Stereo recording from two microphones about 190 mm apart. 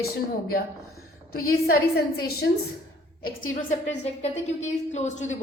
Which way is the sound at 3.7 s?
35° left (ahead or behind).